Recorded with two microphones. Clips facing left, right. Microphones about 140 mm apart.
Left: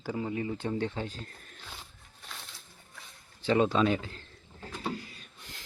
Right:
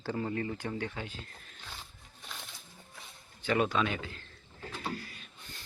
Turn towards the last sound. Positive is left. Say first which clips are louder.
# left 2 dB
turn(degrees=20)  # may be behind; listen again after turning